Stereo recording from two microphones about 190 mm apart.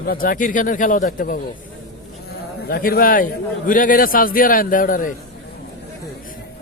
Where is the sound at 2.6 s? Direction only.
55° left (ahead or behind).